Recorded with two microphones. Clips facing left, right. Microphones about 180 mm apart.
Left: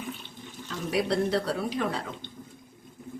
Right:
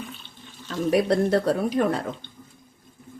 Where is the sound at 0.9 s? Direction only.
50° right (ahead or behind).